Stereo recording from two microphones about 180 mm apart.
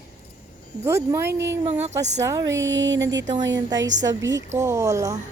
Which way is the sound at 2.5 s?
90° right.